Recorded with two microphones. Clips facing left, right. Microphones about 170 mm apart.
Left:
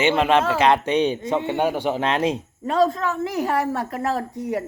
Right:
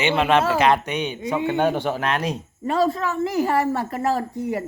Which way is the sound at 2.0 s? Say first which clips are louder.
Left 3 dB; 25° left (ahead or behind).